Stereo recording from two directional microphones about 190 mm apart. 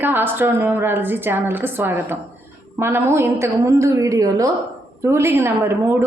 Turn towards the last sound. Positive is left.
turn(degrees=-15)  # may be behind; listen again after turning